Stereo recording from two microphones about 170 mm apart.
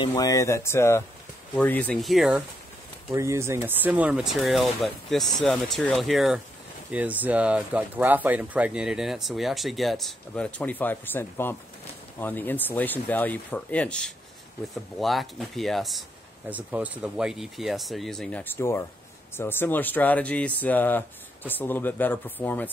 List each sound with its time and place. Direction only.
0.0 s speech: 20° left (ahead or behind); by 2.4 s centre (ahead or behind)
3.1 s speech: 15° right (ahead or behind); by 22.7 s 10° left (ahead or behind)